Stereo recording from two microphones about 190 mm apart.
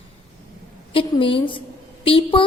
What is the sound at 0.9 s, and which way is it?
A woman's voice, 25° left (ahead or behind).